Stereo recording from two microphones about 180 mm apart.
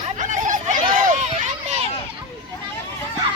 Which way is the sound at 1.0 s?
40° right (ahead or behind).